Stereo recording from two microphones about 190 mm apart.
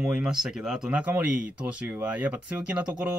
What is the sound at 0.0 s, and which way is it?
Speech, 5° right (ahead or behind).